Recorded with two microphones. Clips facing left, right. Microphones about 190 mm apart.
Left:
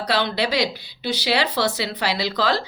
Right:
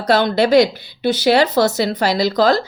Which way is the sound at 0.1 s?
45° right (ahead or behind).